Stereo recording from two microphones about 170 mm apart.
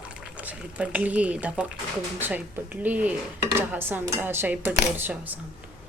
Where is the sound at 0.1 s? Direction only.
10° right (ahead or behind).